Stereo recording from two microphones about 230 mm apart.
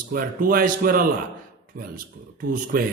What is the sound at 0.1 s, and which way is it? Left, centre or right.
Speech, right.